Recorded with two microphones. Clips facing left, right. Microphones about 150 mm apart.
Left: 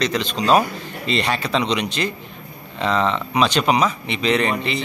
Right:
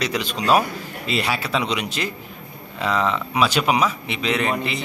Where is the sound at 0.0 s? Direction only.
10° right (ahead or behind).